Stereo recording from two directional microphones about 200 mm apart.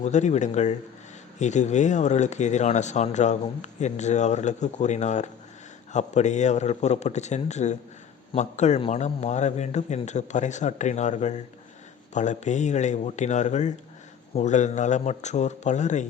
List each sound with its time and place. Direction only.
0.0 s speech: 35° left (ahead or behind)